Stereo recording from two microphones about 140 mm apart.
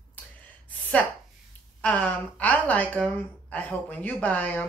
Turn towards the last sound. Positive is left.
turn(degrees=10)  # may be behind; listen again after turning